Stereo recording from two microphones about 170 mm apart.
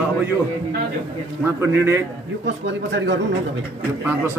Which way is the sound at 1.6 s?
15° right (ahead or behind).